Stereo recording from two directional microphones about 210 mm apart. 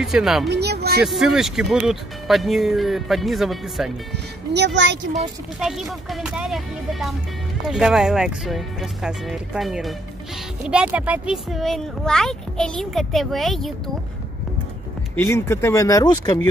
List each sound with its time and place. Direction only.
0.0 s speech: centre (ahead or behind)
0.5 s speech: 50° right (ahead or behind)
1.0 s speech: centre (ahead or behind)
4.6 s speech: 55° right (ahead or behind)
5.1 s speech: centre (ahead or behind)
15.1 s speech: 10° left (ahead or behind)